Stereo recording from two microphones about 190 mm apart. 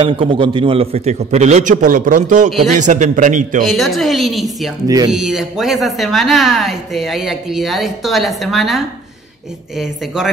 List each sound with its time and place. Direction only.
0.0 s a man's voice: 30° right (ahead or behind)
3.6 s a woman's voice: centre (ahead or behind)
4.8 s speech: 20° right (ahead or behind)
5.1 s a woman's voice: centre (ahead or behind)